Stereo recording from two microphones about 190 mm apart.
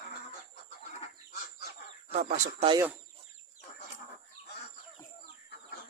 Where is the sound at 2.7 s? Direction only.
15° right (ahead or behind).